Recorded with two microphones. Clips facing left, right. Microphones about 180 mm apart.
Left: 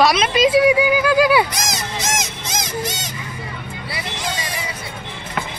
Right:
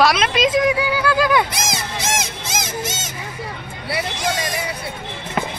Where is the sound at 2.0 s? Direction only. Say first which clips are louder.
Even; 55° right (ahead or behind).